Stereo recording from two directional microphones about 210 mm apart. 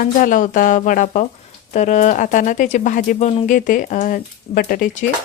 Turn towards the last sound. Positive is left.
turn(degrees=40)  # may be behind; listen again after turning